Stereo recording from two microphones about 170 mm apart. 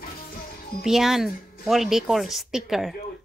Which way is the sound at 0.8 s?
Centre (ahead or behind).